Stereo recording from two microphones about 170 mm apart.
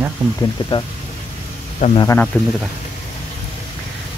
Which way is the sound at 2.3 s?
10° left (ahead or behind).